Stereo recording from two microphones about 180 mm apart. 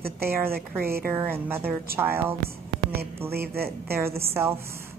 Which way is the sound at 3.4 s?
60° right (ahead or behind).